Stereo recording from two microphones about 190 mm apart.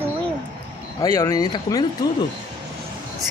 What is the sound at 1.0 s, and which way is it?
Speech, 15° left (ahead or behind).